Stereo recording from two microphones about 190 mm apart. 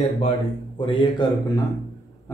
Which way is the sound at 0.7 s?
25° left (ahead or behind).